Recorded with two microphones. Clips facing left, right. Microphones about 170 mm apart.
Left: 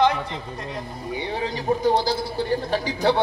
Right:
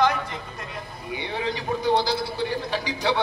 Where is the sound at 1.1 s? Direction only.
40° left (ahead or behind).